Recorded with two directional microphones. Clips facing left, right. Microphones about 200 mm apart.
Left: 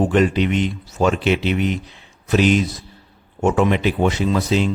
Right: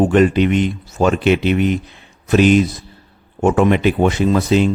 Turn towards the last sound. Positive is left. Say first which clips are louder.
# right 4 dB
turn(degrees=-50)  # may be behind; listen again after turning